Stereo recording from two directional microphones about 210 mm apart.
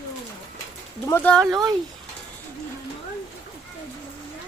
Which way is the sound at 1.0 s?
10° left (ahead or behind).